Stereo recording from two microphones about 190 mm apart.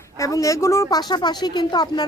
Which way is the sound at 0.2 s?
15° left (ahead or behind).